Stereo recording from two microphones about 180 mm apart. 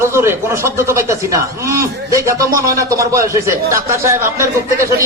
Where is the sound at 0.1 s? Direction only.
15° right (ahead or behind).